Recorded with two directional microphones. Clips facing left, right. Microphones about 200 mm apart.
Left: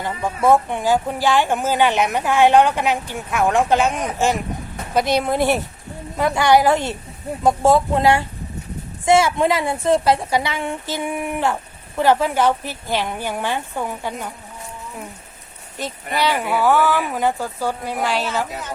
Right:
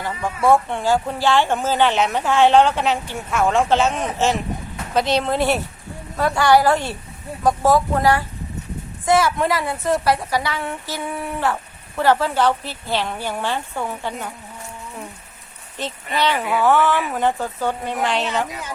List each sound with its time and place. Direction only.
0.0 s a woman's voice: 20° left (ahead or behind)
15.8 s a woman's voice: 10° left (ahead or behind)